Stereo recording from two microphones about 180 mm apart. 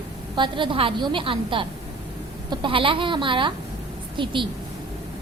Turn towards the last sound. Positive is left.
turn(degrees=-25)  # may be behind; listen again after turning